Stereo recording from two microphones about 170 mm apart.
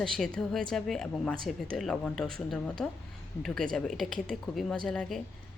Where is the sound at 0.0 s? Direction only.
Centre (ahead or behind).